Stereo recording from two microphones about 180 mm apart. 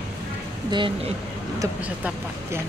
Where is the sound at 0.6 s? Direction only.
25° right (ahead or behind).